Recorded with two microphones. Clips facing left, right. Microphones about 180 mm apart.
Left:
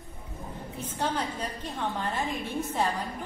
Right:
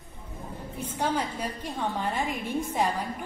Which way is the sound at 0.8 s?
10° right (ahead or behind).